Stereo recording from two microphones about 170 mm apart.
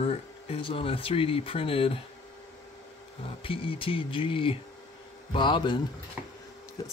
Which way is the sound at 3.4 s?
30° left (ahead or behind).